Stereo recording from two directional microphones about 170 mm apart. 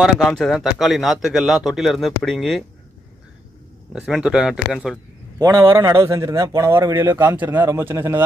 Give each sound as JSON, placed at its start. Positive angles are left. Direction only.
{"t": 0.0, "sound": "a man's voice", "side_deg": 0}
{"t": 3.9, "sound": "a man's voice", "side_deg": -5}
{"t": 5.4, "sound": "a man's voice", "side_deg": -20}